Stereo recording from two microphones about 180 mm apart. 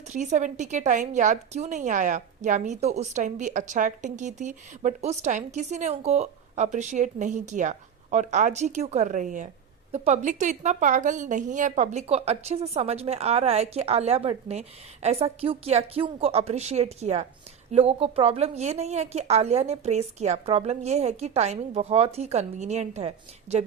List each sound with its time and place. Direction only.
0.1 s a woman's voice: 40° right (ahead or behind)